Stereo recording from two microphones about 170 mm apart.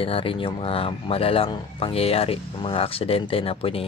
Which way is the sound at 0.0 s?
35° left (ahead or behind).